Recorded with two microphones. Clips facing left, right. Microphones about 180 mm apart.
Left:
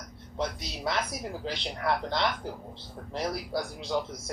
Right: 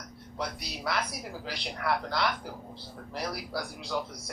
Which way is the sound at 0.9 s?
20° left (ahead or behind).